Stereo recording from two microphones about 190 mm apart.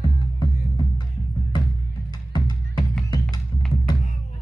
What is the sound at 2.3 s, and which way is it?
Music, 20° left (ahead or behind).